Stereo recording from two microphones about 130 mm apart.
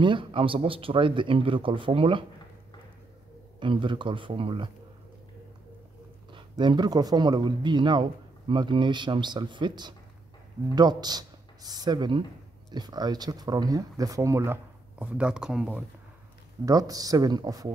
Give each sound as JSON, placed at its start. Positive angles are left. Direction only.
{"t": 0.0, "sound": "speech", "side_deg": -40}
{"t": 3.5, "sound": "speech", "side_deg": -40}
{"t": 6.3, "sound": "speech", "side_deg": -35}
{"t": 16.6, "sound": "speech", "side_deg": -30}